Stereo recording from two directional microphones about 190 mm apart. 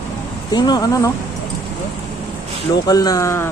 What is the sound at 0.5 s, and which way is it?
Speech, 20° left (ahead or behind).